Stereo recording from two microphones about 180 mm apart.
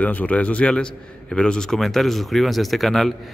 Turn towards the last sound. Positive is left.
turn(degrees=0)  # may be behind; listen again after turning